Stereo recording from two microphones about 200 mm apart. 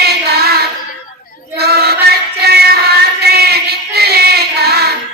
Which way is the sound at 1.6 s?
55° right (ahead or behind).